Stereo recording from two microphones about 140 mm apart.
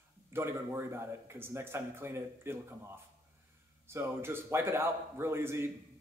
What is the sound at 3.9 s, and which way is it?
Speech, 15° right (ahead or behind).